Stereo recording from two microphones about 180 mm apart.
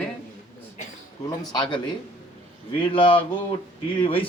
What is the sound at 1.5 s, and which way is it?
Speech, 25° left (ahead or behind).